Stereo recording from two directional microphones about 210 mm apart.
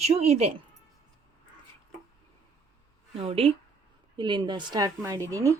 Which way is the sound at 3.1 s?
25° right (ahead or behind).